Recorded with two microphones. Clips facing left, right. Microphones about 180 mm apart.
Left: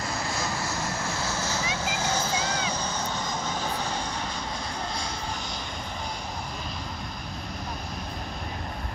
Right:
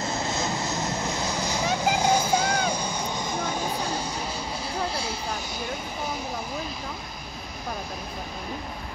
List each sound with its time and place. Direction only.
0.0 s vehicle: 25° right (ahead or behind)